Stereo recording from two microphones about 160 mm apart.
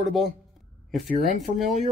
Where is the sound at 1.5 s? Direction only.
55° right (ahead or behind).